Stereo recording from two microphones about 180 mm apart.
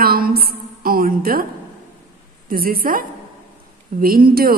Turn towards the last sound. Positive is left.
turn(degrees=-55)  # may be behind; listen again after turning